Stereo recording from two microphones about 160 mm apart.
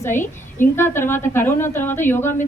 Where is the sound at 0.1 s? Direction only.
50° left (ahead or behind).